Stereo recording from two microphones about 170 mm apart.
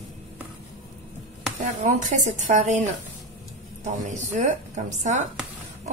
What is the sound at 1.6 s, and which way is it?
Speech, 45° right (ahead or behind).